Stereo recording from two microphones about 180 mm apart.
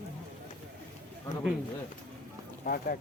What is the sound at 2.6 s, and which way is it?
Speech, 55° left (ahead or behind).